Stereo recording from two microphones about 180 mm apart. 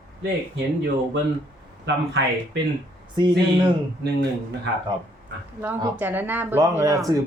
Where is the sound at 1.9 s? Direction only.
75° right (ahead or behind).